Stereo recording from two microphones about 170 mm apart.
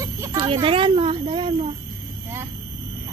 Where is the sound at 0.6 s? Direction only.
30° right (ahead or behind).